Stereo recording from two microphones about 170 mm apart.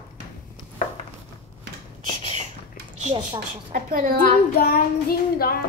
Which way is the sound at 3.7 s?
55° right (ahead or behind).